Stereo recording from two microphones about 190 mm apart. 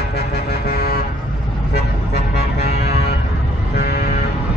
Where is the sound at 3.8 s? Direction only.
55° left (ahead or behind).